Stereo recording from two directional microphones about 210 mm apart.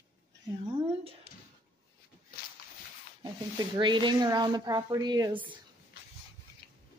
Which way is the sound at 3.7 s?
20° right (ahead or behind).